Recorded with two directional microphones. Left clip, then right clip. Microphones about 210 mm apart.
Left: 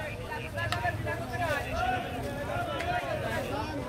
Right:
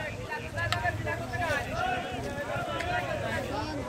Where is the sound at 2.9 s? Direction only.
50° left (ahead or behind).